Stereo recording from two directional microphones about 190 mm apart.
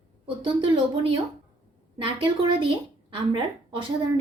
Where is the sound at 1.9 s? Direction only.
25° right (ahead or behind).